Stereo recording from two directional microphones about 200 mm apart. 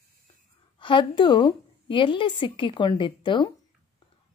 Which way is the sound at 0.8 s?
25° left (ahead or behind).